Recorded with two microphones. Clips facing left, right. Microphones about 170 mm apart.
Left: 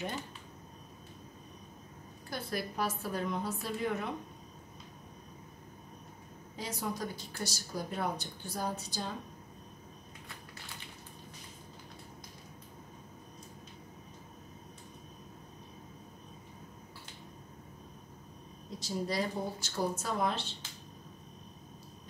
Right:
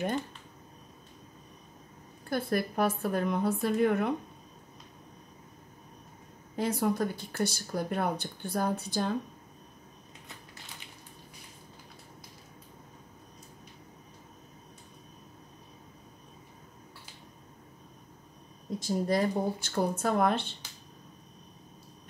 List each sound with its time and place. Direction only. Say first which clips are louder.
2.2 s speech: right 8 dB; 55° right (ahead or behind)
6.5 s speech: right 9 dB; 55° right (ahead or behind)
18.8 s speech: right 6 dB; 50° right (ahead or behind)